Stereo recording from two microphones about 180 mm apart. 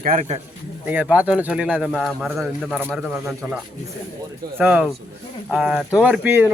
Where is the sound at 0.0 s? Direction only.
40° right (ahead or behind).